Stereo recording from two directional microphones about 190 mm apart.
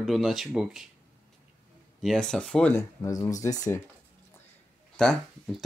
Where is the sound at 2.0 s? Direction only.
5° left (ahead or behind).